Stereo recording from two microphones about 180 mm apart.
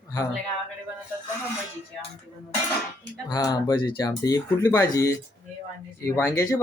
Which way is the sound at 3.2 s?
20° left (ahead or behind).